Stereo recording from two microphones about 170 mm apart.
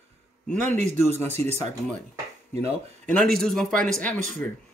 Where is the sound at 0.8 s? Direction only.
45° right (ahead or behind).